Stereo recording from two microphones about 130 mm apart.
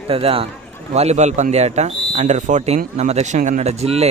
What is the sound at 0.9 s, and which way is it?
Speech, 60° right (ahead or behind).